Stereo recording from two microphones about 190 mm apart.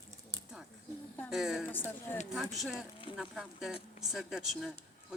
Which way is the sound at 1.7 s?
10° left (ahead or behind).